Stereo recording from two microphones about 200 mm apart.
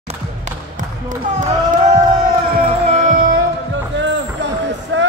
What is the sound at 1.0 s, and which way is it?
Speech, 40° right (ahead or behind).